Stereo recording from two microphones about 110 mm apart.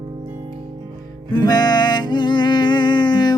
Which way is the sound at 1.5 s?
40° left (ahead or behind).